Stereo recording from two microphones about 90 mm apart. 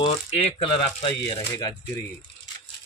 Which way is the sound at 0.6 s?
75° left (ahead or behind).